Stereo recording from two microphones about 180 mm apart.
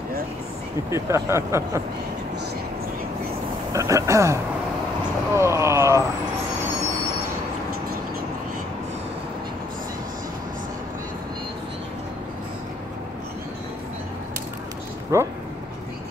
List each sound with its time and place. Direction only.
0.8 s speech: 15° right (ahead or behind)
3.7 s speech: 15° right (ahead or behind)
5.3 s a sound: 15° right (ahead or behind)
15.1 s speech: 15° right (ahead or behind)